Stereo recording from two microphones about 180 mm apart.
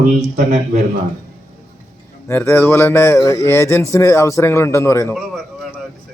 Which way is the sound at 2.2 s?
15° left (ahead or behind).